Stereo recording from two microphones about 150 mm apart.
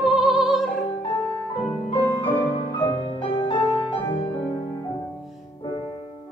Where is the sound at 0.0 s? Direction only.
Centre (ahead or behind).